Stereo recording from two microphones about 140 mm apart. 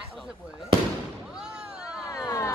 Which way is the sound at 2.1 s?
20° left (ahead or behind).